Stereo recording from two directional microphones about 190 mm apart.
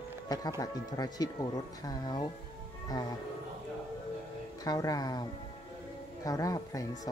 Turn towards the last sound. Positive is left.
turn(degrees=20)  # may be behind; listen again after turning